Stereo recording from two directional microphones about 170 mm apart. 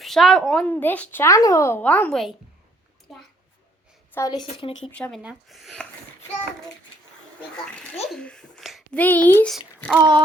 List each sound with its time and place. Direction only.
0.0 s a woman's voice: centre (ahead or behind)
4.1 s a woman's voice: 20° left (ahead or behind)
4.8 s a woman's voice: 10° left (ahead or behind)
5.2 s a woman's voice: 5° right (ahead or behind)
7.6 s a sound: centre (ahead or behind)
9.0 s a woman's voice: 10° left (ahead or behind)
10.0 s a sound: 25° right (ahead or behind)